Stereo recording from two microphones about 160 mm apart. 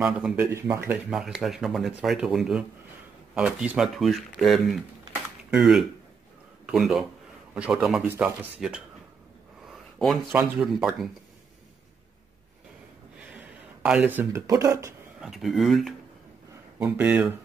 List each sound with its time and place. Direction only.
0.0 s speech: 5° right (ahead or behind)
0.5 s speech: 15° right (ahead or behind)
1.1 s speech: centre (ahead or behind)
9.7 s a sound: centre (ahead or behind)
10.6 s speech: centre (ahead or behind)
13.2 s speech: 10° right (ahead or behind)
15.1 s speech: centre (ahead or behind)
16.7 s speech: 10° right (ahead or behind)